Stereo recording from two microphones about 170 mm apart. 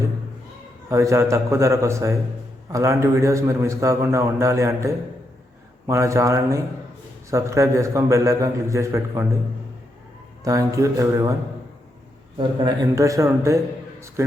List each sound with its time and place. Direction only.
0.9 s a man's voice: 15° right (ahead or behind)
10.4 s speech: 20° right (ahead or behind)
12.6 s speech: 20° right (ahead or behind)